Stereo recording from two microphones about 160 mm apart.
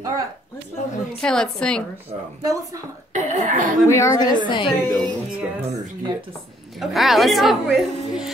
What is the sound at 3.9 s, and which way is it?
Speech, 20° left (ahead or behind).